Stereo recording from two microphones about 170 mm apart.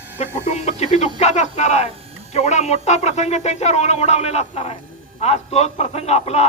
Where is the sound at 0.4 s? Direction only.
40° left (ahead or behind).